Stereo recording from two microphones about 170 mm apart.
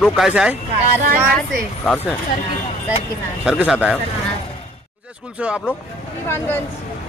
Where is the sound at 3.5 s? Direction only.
5° right (ahead or behind).